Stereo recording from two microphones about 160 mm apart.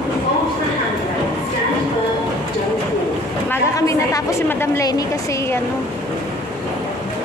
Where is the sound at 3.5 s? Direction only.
20° left (ahead or behind).